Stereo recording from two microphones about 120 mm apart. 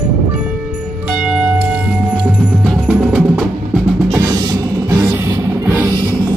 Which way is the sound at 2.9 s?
5° right (ahead or behind).